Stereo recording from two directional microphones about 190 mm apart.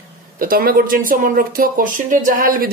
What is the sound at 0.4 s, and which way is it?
Speech, 50° right (ahead or behind).